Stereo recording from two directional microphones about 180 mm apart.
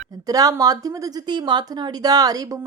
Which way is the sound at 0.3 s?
20° right (ahead or behind).